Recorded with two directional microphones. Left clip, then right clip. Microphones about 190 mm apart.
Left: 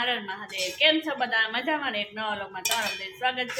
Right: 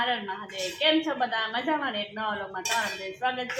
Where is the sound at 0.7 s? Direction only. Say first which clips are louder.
Left 1 dB; 5° right (ahead or behind).